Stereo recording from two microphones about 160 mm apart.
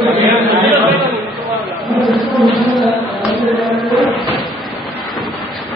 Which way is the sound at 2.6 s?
Centre (ahead or behind).